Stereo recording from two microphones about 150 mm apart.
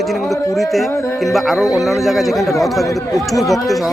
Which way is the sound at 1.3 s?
5° right (ahead or behind).